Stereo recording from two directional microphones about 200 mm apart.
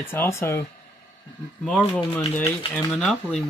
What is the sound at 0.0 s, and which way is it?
Speech, 10° left (ahead or behind).